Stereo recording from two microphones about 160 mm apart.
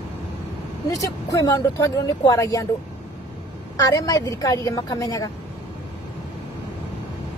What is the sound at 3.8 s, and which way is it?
Speech, 20° left (ahead or behind).